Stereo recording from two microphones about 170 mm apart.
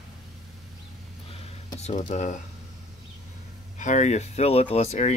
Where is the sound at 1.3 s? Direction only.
35° left (ahead or behind).